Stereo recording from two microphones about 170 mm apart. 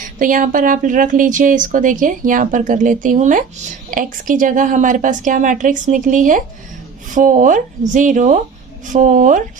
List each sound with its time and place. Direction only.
0.0 s speech: 50° right (ahead or behind)